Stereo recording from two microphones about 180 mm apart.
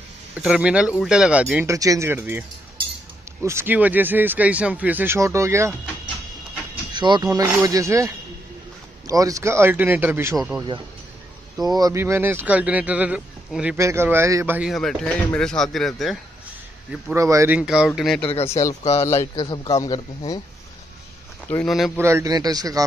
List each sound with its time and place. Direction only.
0.4 s speech: 5° right (ahead or behind)
1.7 s speech: 20° right (ahead or behind)
3.4 s speech: 10° right (ahead or behind)
6.7 s a sound: 25° right (ahead or behind)
7.6 s speech: 20° right (ahead or behind)
11.6 s speech: 20° right (ahead or behind)
14.7 s speech: centre (ahead or behind)
17.1 s speech: 15° right (ahead or behind); by 18.2 s centre (ahead or behind)
18.2 s speech: 35° left (ahead or behind)
19.0 s a man's voice: 20° left (ahead or behind)
21.5 s speech: 5° left (ahead or behind)
21.9 s speech: 15° right (ahead or behind)